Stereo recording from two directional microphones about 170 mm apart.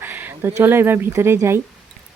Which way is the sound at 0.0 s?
15° right (ahead or behind).